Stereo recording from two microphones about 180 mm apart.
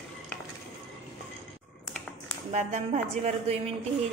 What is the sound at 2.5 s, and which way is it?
A woman's voice, 35° right (ahead or behind).